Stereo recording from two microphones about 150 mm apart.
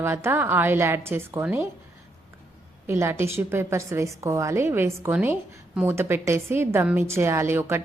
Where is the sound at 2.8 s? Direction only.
15° right (ahead or behind).